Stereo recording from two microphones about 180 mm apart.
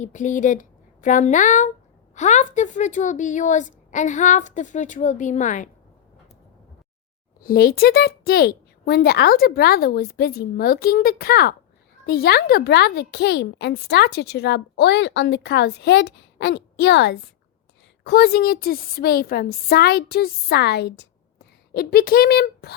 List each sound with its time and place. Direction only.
0.0 s a woman's voice: 45° left (ahead or behind)
7.4 s a child's voice: 55° left (ahead or behind)
21.7 s speech: 55° left (ahead or behind)